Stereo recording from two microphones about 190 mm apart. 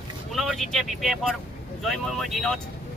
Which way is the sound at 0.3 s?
Centre (ahead or behind).